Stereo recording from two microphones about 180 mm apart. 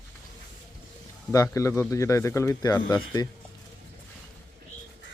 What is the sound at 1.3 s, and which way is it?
A man's voice, 15° left (ahead or behind).